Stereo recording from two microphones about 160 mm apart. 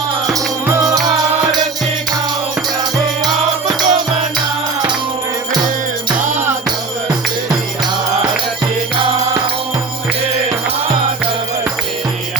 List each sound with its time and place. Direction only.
0.7 s music: 20° right (ahead or behind)
3.8 s music: 30° right (ahead or behind)